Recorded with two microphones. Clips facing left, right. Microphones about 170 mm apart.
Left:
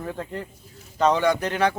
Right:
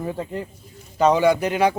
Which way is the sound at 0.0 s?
10° right (ahead or behind).